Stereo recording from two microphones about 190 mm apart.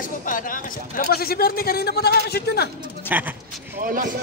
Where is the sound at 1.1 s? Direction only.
55° left (ahead or behind).